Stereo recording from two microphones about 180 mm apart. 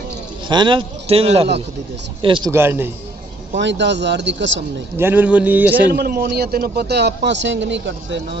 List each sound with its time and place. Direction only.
0.5 s a man's voice: 25° right (ahead or behind)
2.5 s speech: 15° right (ahead or behind)
3.5 s speech: 75° right (ahead or behind)
4.9 s speech: 10° right (ahead or behind)
5.9 s speech: 55° right (ahead or behind); by 8.4 s 75° right (ahead or behind)